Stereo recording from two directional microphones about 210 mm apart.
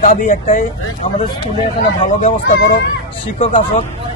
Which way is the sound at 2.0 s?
40° left (ahead or behind).